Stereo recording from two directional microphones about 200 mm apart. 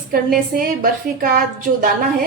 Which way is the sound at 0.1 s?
45° right (ahead or behind).